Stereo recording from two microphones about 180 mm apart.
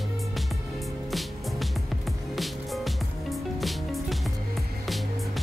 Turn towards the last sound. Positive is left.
turn(degrees=0)  # may be behind; listen again after turning